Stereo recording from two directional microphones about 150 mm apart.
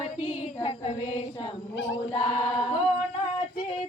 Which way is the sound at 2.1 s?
40° left (ahead or behind).